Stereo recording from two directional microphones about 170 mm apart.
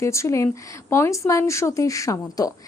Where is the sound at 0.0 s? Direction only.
15° left (ahead or behind).